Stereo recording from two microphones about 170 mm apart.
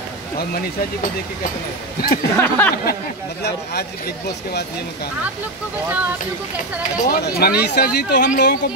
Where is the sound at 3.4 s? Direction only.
70° left (ahead or behind).